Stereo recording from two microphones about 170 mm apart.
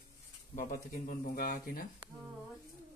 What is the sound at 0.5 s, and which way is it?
Speech, 55° left (ahead or behind).